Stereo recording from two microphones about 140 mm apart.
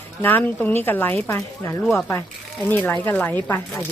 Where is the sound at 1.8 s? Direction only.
5° left (ahead or behind).